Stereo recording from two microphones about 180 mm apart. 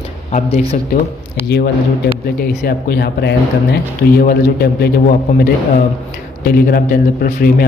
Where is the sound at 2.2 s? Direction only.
60° left (ahead or behind).